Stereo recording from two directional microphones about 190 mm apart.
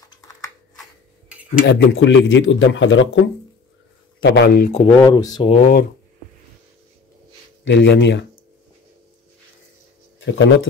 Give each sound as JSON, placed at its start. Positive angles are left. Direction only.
{"t": 1.7, "sound": "speech", "side_deg": 70}
{"t": 4.2, "sound": "speech", "side_deg": 65}
{"t": 4.7, "sound": "speech", "side_deg": 25}
{"t": 5.5, "sound": "speech", "side_deg": 35}
{"t": 7.6, "sound": "speech", "side_deg": 65}
{"t": 10.2, "sound": "speech", "side_deg": 75}